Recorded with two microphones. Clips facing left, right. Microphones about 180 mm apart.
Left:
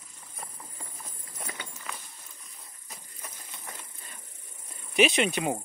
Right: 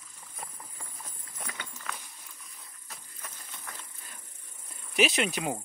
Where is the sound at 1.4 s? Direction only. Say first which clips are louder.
Left 2 dB; 15° left (ahead or behind).